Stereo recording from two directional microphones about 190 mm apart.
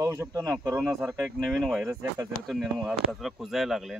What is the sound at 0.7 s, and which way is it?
Speech, 5° right (ahead or behind).